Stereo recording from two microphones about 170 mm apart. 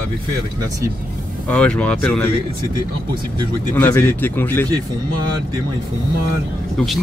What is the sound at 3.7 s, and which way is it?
Speech, 15° left (ahead or behind).